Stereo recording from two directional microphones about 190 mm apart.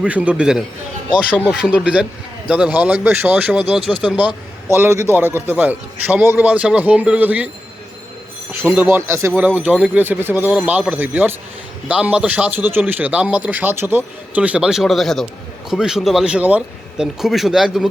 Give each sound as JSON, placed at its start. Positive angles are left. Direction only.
{"t": 0.0, "sound": "speech", "side_deg": -5}
{"t": 8.5, "sound": "speech", "side_deg": -10}